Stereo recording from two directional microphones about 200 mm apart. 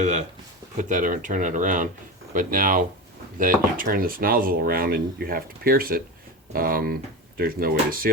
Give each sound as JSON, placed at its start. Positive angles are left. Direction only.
{"t": 0.8, "sound": "speech", "side_deg": -40}